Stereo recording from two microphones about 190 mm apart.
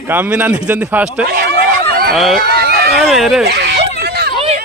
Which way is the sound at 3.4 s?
60° right (ahead or behind).